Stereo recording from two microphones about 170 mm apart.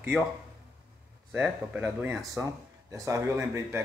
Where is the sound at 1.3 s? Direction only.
10° right (ahead or behind).